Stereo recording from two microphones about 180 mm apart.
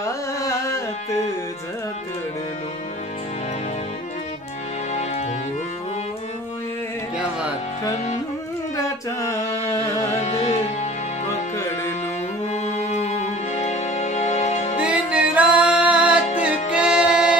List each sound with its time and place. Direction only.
0.0 s carnatic music: 15° left (ahead or behind)
8.7 s a sound: 15° left (ahead or behind)
9.8 s music: 15° left (ahead or behind)
10.1 s music: 40° left (ahead or behind)
12.6 s music: 40° left (ahead or behind)
14.9 s music: 5° right (ahead or behind)